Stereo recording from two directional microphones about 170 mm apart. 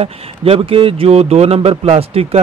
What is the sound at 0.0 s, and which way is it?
Speech, 35° right (ahead or behind).